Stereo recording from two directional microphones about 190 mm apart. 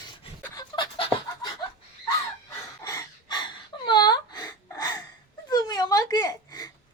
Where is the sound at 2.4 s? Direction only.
15° left (ahead or behind).